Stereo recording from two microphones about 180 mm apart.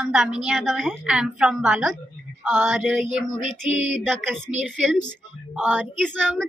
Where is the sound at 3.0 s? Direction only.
40° right (ahead or behind).